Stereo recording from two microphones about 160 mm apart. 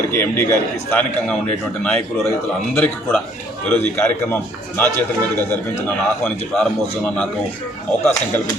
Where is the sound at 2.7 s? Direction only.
10° left (ahead or behind).